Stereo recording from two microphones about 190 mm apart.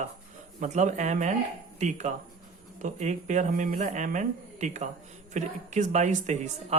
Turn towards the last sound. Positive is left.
turn(degrees=-40)  # may be behind; listen again after turning